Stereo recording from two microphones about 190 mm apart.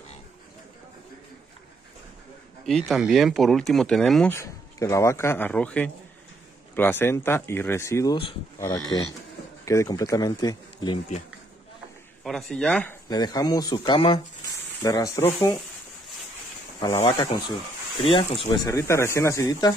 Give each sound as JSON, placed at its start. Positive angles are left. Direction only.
{"t": 2.6, "sound": "speech", "side_deg": 0}
{"t": 4.3, "sound": "speech", "side_deg": 15}
{"t": 12.2, "sound": "speech", "side_deg": 0}
{"t": 13.1, "sound": "speech", "side_deg": 20}
{"t": 16.8, "sound": "speech", "side_deg": 15}